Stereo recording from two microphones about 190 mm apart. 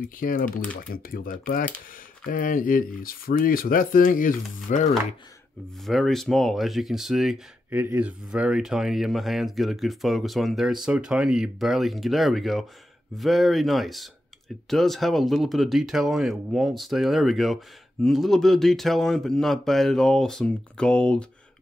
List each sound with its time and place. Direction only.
0.0 s speech: 45° left (ahead or behind)
5.9 s speech: centre (ahead or behind)